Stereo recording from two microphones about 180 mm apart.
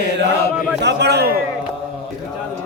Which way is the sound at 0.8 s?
70° right (ahead or behind).